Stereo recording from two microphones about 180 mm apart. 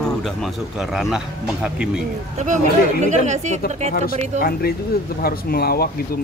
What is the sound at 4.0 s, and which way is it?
Speech, 55° left (ahead or behind).